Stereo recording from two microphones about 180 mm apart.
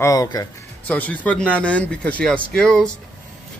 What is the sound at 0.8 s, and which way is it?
A man's voice, 10° left (ahead or behind).